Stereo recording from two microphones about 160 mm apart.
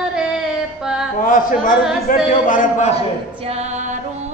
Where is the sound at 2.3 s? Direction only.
55° left (ahead or behind).